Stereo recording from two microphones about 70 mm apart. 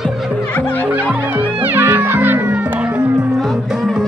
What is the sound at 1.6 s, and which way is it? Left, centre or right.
Cat, right.